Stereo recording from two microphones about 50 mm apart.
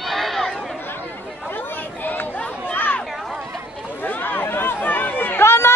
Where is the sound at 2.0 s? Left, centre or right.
Left.